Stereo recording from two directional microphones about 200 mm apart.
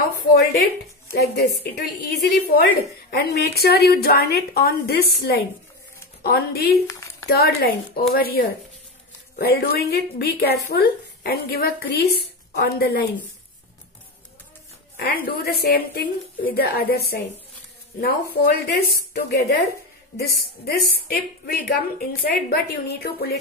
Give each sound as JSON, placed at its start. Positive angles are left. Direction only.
{"t": 0.0, "sound": "a woman's voice", "side_deg": 50}
{"t": 6.9, "sound": "a sound", "side_deg": 15}
{"t": 7.2, "sound": "a woman's voice", "side_deg": 50}
{"t": 15.0, "sound": "a woman's voice", "side_deg": 45}
{"t": 20.6, "sound": "a woman's voice", "side_deg": 50}